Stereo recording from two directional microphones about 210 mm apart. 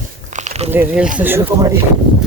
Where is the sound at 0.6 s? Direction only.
5° right (ahead or behind).